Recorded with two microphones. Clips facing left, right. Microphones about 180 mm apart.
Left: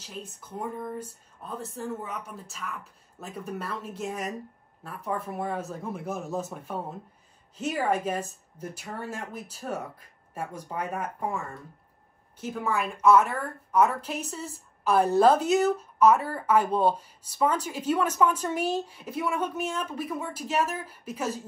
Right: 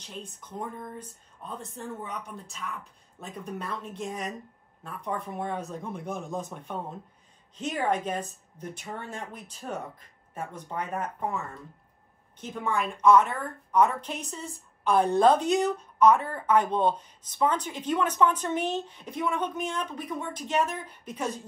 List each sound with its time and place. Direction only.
0.0 s a woman's voice: 5° left (ahead or behind)
12.4 s a woman's voice: 5° left (ahead or behind)